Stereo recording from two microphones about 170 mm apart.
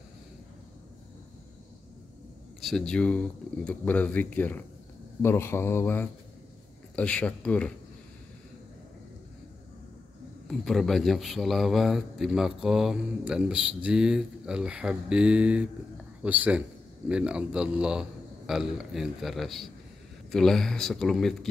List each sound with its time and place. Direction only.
2.6 s speech: 5° left (ahead or behind)
10.6 s a man's voice: centre (ahead or behind)